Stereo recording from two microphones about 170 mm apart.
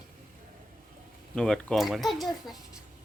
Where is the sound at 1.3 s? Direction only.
5° left (ahead or behind).